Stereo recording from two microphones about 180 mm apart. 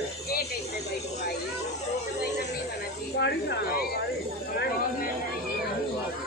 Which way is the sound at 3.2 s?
65° left (ahead or behind).